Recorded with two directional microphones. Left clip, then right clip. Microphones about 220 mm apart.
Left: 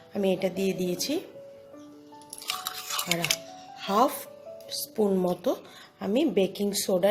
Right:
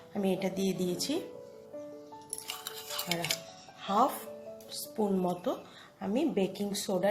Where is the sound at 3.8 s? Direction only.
35° left (ahead or behind).